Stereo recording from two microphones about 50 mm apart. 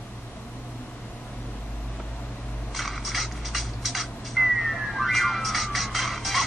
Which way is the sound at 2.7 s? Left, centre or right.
Centre.